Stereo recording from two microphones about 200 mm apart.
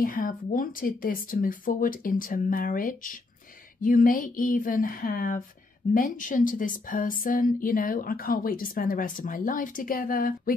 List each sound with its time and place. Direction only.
0.0 s speech: 45° left (ahead or behind)